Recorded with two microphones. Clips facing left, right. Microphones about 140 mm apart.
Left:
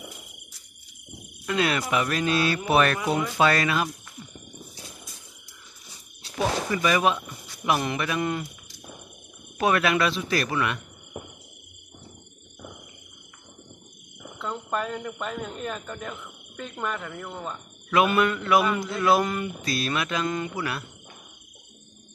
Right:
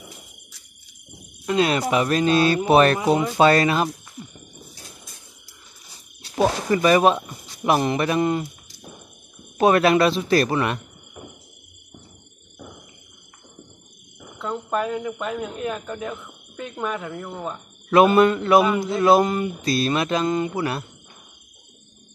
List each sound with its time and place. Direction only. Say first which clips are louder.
1.4 s speech: right 5 dB; 25° right (ahead or behind)
6.3 s speech: right 6 dB; 40° right (ahead or behind)
9.6 s speech: right 6 dB; 35° right (ahead or behind)
14.4 s speech: right 5 dB; 5° right (ahead or behind)
17.8 s speech: right 7 dB; 35° right (ahead or behind)